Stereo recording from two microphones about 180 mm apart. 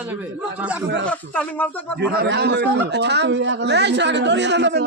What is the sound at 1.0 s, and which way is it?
Speech, 5° left (ahead or behind).